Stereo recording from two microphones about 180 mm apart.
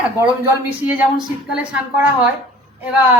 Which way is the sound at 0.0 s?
10° right (ahead or behind).